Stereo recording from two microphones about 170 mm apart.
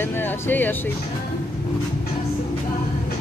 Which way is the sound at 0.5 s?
10° left (ahead or behind).